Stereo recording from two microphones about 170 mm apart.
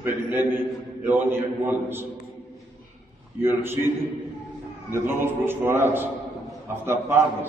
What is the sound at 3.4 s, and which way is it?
Speech, 15° right (ahead or behind).